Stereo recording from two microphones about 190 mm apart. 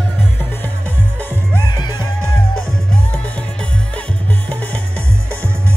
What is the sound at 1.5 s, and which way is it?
Music, 20° left (ahead or behind).